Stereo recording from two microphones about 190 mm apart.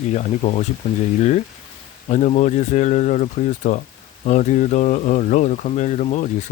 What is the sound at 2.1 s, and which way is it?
Speech, 35° left (ahead or behind).